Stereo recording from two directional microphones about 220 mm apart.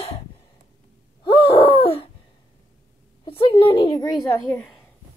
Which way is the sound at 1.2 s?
25° left (ahead or behind).